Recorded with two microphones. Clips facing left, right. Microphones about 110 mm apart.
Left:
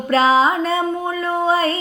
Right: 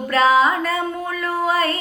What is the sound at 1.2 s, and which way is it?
Music, 25° left (ahead or behind).